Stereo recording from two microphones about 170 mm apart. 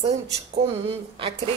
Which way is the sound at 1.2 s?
30° right (ahead or behind).